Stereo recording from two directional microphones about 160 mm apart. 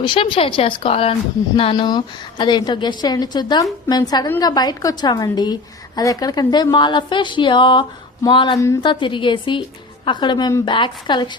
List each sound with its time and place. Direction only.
0.0 s a woman's voice: 30° left (ahead or behind)